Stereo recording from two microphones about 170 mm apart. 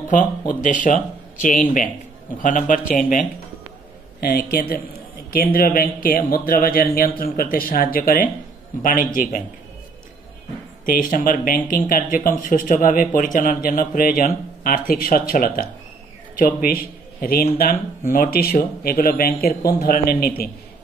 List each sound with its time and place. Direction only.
0.1 s speech: 50° left (ahead or behind)
10.9 s speech: 55° left (ahead or behind)